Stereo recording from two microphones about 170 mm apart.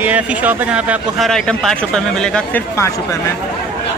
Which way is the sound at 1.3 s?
5° left (ahead or behind).